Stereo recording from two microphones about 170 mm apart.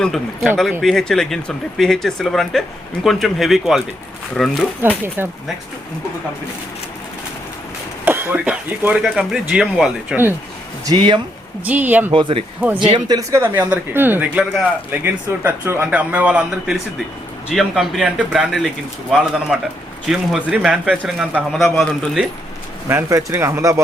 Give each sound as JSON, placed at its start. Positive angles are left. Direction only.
{"t": 0.0, "sound": "speech", "side_deg": 0}
{"t": 5.0, "sound": "speech", "side_deg": -10}
{"t": 8.0, "sound": "speech", "side_deg": -10}
{"t": 10.8, "sound": "speech", "side_deg": -30}
{"t": 11.6, "sound": "speech", "side_deg": -10}
{"t": 12.1, "sound": "speech", "side_deg": -30}
{"t": 22.9, "sound": "speech", "side_deg": -15}